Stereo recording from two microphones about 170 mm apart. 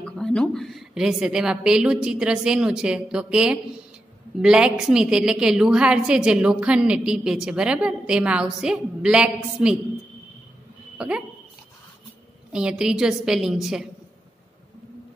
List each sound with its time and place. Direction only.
0.0 s a woman's voice: 5° left (ahead or behind)
11.0 s a sound: 5° right (ahead or behind)
12.5 s a woman's voice: 5° right (ahead or behind)